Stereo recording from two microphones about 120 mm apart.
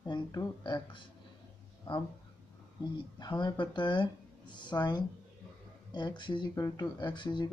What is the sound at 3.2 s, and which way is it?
Speech, 35° left (ahead or behind).